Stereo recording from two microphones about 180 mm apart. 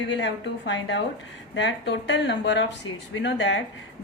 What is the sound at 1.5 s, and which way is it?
A woman's voice, 75° left (ahead or behind).